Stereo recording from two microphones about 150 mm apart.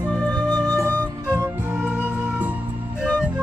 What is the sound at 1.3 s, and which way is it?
Music, 15° right (ahead or behind).